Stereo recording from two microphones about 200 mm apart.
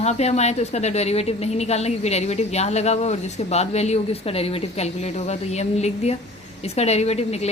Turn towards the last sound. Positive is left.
turn(degrees=30)  # may be behind; listen again after turning